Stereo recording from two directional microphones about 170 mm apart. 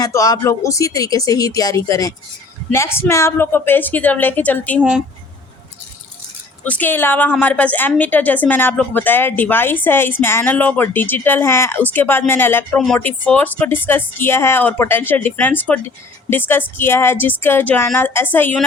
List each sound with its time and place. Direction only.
0.0 s a woman's voice: 20° left (ahead or behind)
4.8 s speech: 5° right (ahead or behind)
6.7 s a woman's voice: 10° left (ahead or behind)